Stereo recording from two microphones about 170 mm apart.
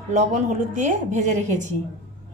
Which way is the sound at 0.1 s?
45° right (ahead or behind).